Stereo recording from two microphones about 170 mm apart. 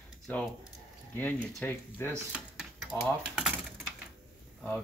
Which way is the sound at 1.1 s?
10° left (ahead or behind).